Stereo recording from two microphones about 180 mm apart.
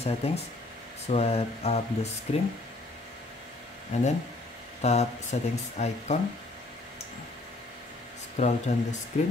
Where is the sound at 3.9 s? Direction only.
40° left (ahead or behind).